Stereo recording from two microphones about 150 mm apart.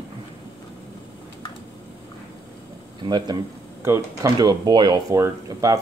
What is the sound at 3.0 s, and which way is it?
Speech, 30° right (ahead or behind).